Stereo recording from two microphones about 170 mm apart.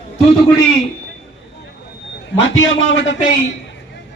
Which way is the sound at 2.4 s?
90° left.